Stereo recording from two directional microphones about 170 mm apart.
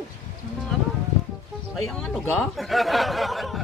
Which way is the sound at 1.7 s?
Centre (ahead or behind).